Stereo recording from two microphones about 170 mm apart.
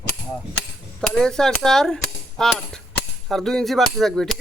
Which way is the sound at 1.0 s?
5° left (ahead or behind).